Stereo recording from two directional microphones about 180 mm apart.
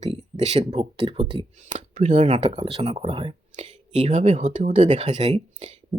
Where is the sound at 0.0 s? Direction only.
35° right (ahead or behind).